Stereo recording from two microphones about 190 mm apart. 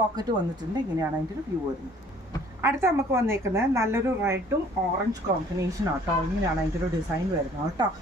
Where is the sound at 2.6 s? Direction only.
15° right (ahead or behind).